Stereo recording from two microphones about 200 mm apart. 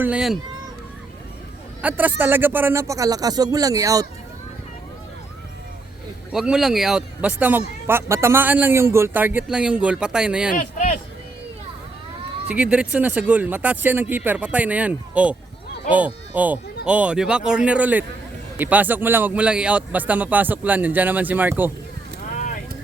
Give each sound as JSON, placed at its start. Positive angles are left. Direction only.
{"t": 0.0, "sound": "speech", "side_deg": -5}
{"t": 1.8, "sound": "a man's voice", "side_deg": -10}
{"t": 6.3, "sound": "a man's voice", "side_deg": -5}
{"t": 10.5, "sound": "speech", "side_deg": 40}
{"t": 12.5, "sound": "a man's voice", "side_deg": -5}